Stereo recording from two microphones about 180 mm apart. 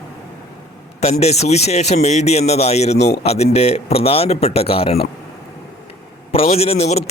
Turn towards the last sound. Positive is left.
turn(degrees=35)  # may be behind; listen again after turning